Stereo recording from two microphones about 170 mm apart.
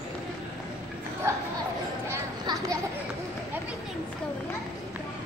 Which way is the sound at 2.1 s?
20° right (ahead or behind).